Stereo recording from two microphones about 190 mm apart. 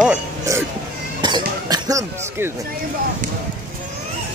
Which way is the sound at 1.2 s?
20° right (ahead or behind).